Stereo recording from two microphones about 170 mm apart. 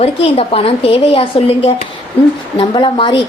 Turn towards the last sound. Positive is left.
turn(degrees=30)  # may be behind; listen again after turning